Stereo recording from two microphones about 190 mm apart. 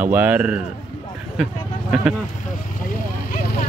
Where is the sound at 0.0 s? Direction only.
10° right (ahead or behind).